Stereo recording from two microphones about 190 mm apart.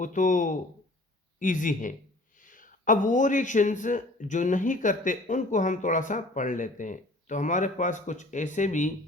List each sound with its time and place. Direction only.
0.0 s a man's voice: 40° left (ahead or behind)